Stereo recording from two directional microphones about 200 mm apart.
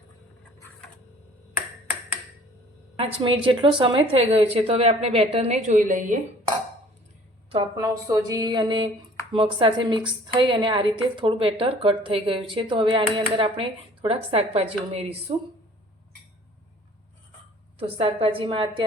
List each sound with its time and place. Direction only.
3.0 s a woman's voice: 30° right (ahead or behind)
7.5 s a woman's voice: 15° right (ahead or behind)
17.7 s a woman's voice: 30° right (ahead or behind)